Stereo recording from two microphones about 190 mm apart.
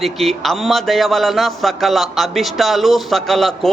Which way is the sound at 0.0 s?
Centre (ahead or behind).